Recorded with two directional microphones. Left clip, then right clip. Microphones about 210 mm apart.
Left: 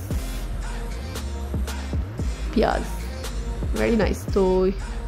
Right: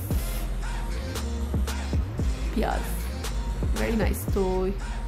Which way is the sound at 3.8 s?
20° left (ahead or behind).